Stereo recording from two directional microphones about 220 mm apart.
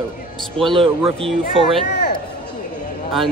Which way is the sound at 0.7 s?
25° right (ahead or behind).